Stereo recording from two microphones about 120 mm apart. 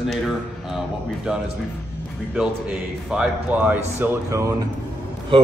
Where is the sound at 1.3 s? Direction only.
5° right (ahead or behind); by 4.7 s 25° right (ahead or behind).